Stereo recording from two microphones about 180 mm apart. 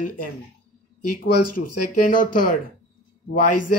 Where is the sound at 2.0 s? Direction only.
50° left (ahead or behind).